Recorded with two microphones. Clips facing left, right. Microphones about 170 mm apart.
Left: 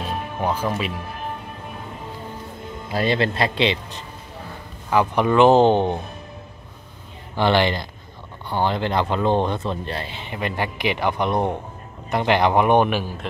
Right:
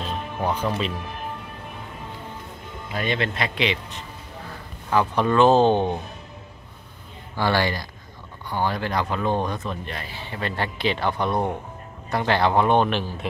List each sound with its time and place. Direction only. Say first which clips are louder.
0.4 s speech: left 1 dB; 5° left (ahead or behind)
2.9 s speech: left 5 dB; 35° left (ahead or behind)
4.9 s speech: left 2 dB; 15° left (ahead or behind)
7.3 s speech: left 4 dB; 20° left (ahead or behind)